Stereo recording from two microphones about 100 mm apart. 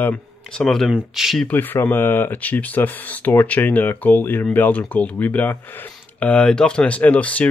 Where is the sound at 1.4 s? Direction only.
20° left (ahead or behind).